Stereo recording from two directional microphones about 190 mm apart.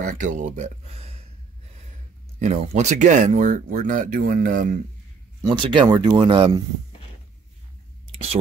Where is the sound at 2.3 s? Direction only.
40° right (ahead or behind).